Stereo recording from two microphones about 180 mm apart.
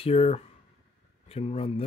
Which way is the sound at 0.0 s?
35° left (ahead or behind).